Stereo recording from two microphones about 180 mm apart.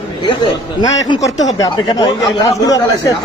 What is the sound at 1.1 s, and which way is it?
Speech, 20° left (ahead or behind).